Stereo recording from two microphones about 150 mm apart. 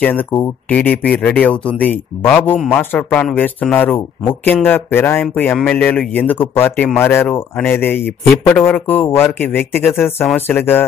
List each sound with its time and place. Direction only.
0.7 s speech: 10° left (ahead or behind)